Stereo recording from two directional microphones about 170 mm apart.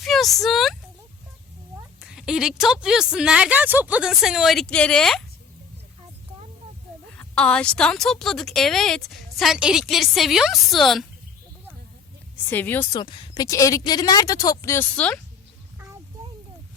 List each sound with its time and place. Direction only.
0.0 s speech: centre (ahead or behind)
2.0 s speech: 5° right (ahead or behind)
7.2 s speech: 5° left (ahead or behind)
12.5 s speech: 10° left (ahead or behind)
13.0 s a woman's voice: 30° left (ahead or behind); by 15.2 s 10° left (ahead or behind)